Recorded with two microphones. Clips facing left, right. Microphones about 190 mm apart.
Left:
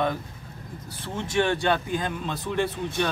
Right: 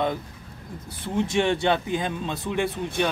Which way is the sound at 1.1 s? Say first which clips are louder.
Right 2 dB; 20° right (ahead or behind).